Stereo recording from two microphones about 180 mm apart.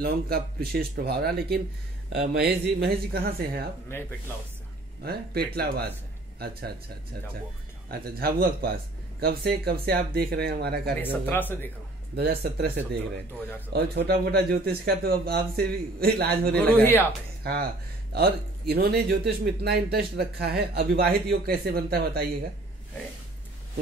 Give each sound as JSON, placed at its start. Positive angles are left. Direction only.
{"t": 0.0, "sound": "speech", "side_deg": -60}
{"t": 5.0, "sound": "speech", "side_deg": -60}
{"t": 7.9, "sound": "speech", "side_deg": -55}
{"t": 11.0, "sound": "speech", "side_deg": 10}
{"t": 12.2, "sound": "speech", "side_deg": -65}
{"t": 16.5, "sound": "speech", "side_deg": 10}
{"t": 17.4, "sound": "speech", "side_deg": -60}